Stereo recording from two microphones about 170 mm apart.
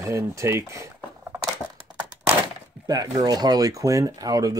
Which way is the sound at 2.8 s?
20° right (ahead or behind).